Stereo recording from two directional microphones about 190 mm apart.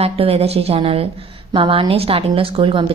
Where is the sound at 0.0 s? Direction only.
30° right (ahead or behind).